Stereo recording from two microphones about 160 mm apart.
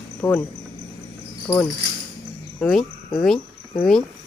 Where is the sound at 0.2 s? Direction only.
25° left (ahead or behind).